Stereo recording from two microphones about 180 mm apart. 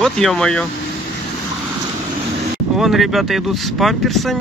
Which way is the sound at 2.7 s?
Centre (ahead or behind).